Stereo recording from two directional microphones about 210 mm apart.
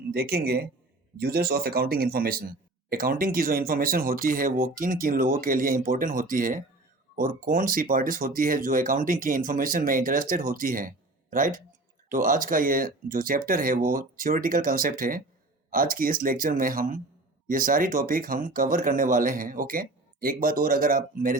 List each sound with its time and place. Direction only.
0.1 s speech: 50° right (ahead or behind)